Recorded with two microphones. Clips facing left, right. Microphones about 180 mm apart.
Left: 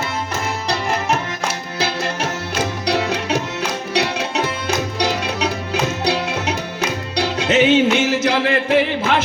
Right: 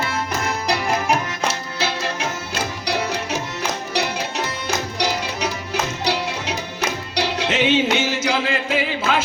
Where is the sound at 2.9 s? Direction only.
75° left (ahead or behind).